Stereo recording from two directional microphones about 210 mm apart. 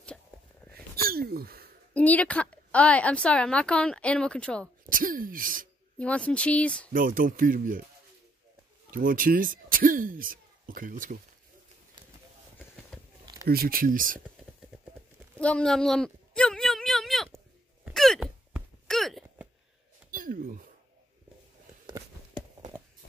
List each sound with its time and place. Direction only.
0.9 s hiccup: 45° right (ahead or behind)
2.0 s a woman's voice: 5° left (ahead or behind)
4.8 s speech: 40° right (ahead or behind)
5.9 s a woman's voice: 5° left (ahead or behind)
6.9 s speech: 40° right (ahead or behind)
8.9 s speech: 40° right (ahead or behind)
13.2 s a sound: 20° right (ahead or behind)
13.5 s speech: 45° right (ahead or behind)
15.3 s speech: 5° left (ahead or behind)
17.8 s a sound: centre (ahead or behind)
20.1 s a sound: 40° right (ahead or behind)